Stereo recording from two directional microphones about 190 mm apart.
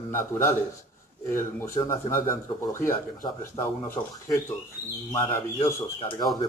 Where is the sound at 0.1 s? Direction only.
15° left (ahead or behind).